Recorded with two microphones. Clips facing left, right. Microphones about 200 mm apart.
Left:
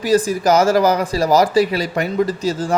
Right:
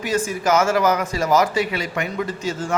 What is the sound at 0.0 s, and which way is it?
Speech, 35° left (ahead or behind).